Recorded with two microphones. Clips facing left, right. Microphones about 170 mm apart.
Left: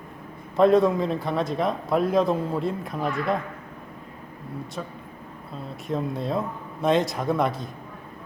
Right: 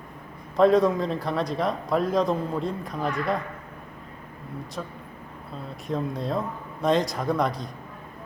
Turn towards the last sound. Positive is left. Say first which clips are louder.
# left 1 dB
turn(degrees=0)  # may be behind; listen again after turning